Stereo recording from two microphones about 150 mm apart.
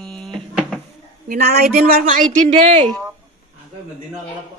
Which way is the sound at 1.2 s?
90° right.